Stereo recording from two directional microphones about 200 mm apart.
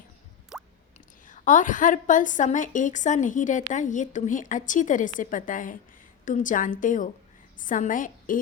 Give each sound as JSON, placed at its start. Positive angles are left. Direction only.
{"t": 0.5, "sound": "drip", "side_deg": -5}
{"t": 1.3, "sound": "a woman's voice", "side_deg": 40}